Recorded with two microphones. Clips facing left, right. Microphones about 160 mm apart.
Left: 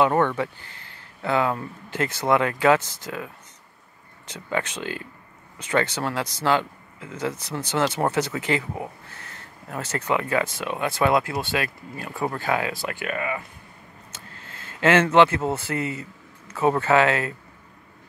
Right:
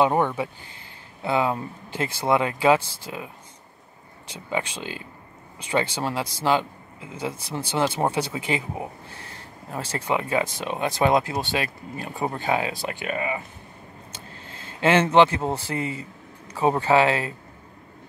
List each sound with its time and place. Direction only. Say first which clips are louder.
0.0 s speech: left 1 dB; 15° right (ahead or behind)
4.3 s speech: left 1 dB; 15° right (ahead or behind)
9.2 s a sound: right 2 dB; 30° right (ahead or behind)
9.8 s speech: left 1 dB; 15° right (ahead or behind)
14.5 s a sound: left 1 dB; 15° right (ahead or behind)
15.1 s speech: even; 15° right (ahead or behind)